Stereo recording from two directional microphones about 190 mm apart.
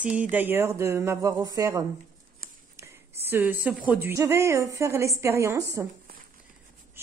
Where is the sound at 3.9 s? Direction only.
10° right (ahead or behind).